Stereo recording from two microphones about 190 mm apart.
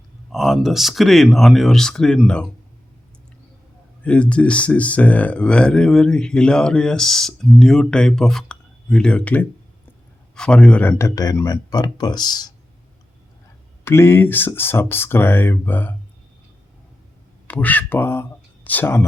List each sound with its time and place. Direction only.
0.3 s speech: centre (ahead or behind)
4.0 s speech: 5° left (ahead or behind); by 12.5 s 20° left (ahead or behind)
13.8 s speech: 15° left (ahead or behind)
17.5 s speech: 10° left (ahead or behind)